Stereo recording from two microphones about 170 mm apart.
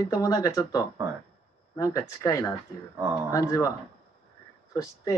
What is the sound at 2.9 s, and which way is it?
Speech, 15° right (ahead or behind).